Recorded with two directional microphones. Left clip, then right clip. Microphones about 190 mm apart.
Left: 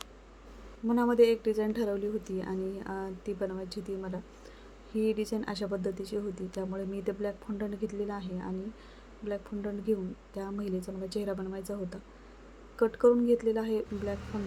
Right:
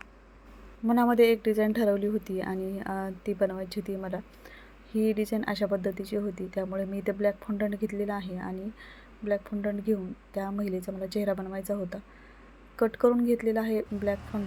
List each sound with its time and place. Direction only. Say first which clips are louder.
0.9 s a woman's voice: right 2 dB; 20° right (ahead or behind)